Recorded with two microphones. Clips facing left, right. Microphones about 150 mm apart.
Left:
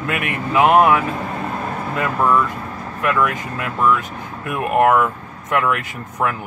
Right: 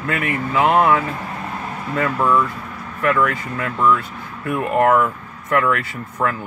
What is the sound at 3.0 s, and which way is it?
Speech, 20° left (ahead or behind).